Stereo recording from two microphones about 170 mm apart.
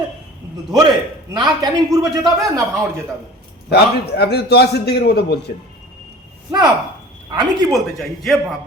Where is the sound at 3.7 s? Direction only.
75° left (ahead or behind).